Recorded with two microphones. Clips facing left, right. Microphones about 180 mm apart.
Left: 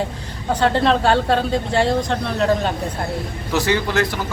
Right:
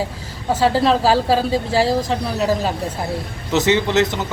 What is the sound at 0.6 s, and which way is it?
A woman's voice, 5° right (ahead or behind).